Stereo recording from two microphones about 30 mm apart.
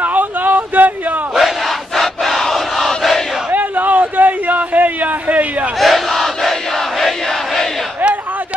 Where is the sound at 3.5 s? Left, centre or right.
Right.